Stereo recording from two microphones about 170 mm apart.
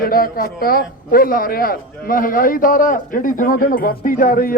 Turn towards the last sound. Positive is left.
turn(degrees=55)  # may be behind; listen again after turning